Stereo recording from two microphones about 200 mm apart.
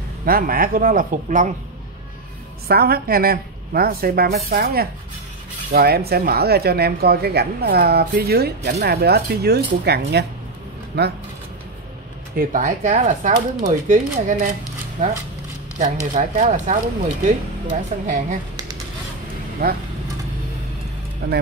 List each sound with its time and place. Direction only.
0.2 s speech: 45° right (ahead or behind)
2.7 s speech: 50° right (ahead or behind)
12.4 s speech: 40° right (ahead or behind)
17.9 s speech: 35° right (ahead or behind)
19.6 s speech: 50° right (ahead or behind)
21.2 s speech: 50° right (ahead or behind)